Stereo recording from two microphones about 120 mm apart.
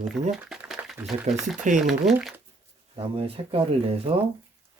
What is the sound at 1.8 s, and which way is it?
Speech, centre (ahead or behind).